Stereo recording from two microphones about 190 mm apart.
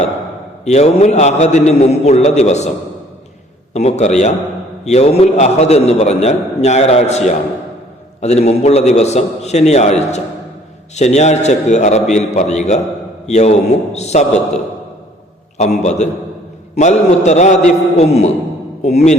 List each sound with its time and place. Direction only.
0.6 s a man's voice: 35° left (ahead or behind)
3.8 s a man's voice: 35° left (ahead or behind)
15.5 s a man's voice: 35° left (ahead or behind)